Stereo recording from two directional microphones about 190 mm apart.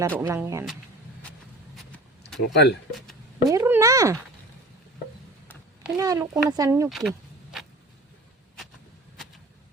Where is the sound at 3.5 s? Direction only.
15° right (ahead or behind).